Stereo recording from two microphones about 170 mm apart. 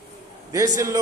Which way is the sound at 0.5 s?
20° right (ahead or behind).